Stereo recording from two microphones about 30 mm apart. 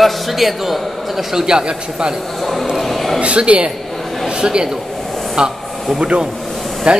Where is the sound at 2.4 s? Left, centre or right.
Centre.